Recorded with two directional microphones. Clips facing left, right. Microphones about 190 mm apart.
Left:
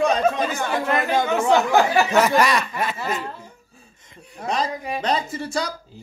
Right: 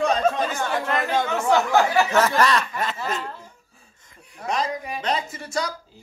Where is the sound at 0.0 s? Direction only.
10° left (ahead or behind).